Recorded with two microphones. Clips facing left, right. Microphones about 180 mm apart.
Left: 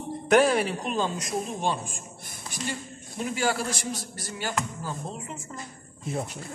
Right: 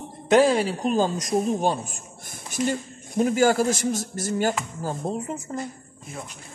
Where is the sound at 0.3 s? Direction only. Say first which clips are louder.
Right 3 dB; 30° right (ahead or behind).